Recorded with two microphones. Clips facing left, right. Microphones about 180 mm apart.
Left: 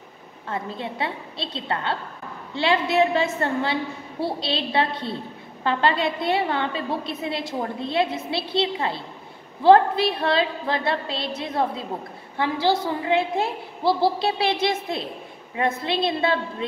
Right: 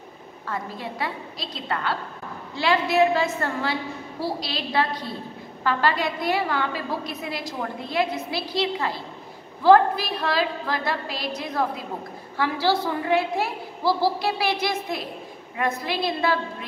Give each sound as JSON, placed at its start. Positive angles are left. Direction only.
{"t": 0.5, "sound": "a woman's voice", "side_deg": 25}